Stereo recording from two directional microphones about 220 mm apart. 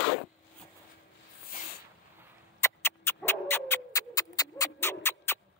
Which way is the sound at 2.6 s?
10° left (ahead or behind).